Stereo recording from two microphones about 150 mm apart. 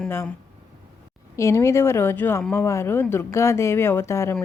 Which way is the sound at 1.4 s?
20° left (ahead or behind).